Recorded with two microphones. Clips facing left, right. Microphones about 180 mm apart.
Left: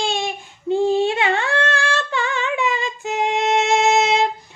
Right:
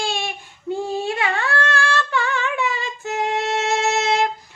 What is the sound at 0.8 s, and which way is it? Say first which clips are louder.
Humming: left 6 dB; 25° left (ahead or behind).